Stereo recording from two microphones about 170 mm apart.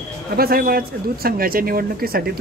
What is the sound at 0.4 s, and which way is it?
Speech, 60° right (ahead or behind).